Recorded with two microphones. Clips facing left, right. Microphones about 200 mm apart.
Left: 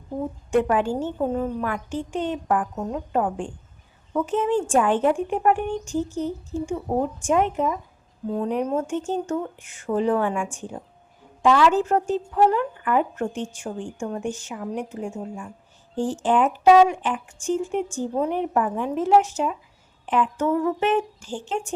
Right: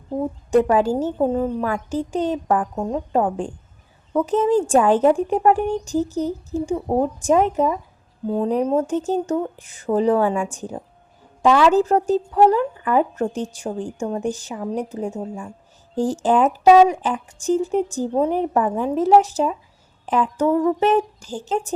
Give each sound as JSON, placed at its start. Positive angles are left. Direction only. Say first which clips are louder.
{"t": 0.5, "sound": "speech", "louder": "right 4 dB", "side_deg": -40}